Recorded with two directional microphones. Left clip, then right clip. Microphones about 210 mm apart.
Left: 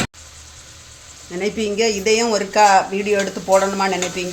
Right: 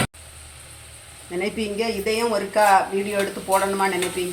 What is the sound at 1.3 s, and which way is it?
Speech, 25° left (ahead or behind).